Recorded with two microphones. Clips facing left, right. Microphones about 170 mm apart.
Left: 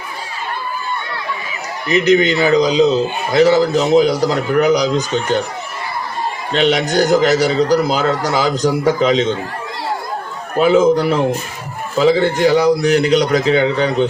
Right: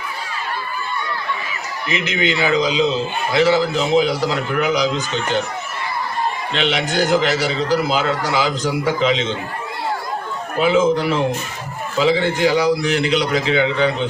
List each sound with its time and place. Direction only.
1.9 s a man's voice: 40° left (ahead or behind)
6.5 s a man's voice: 40° left (ahead or behind)
10.6 s a man's voice: 40° left (ahead or behind)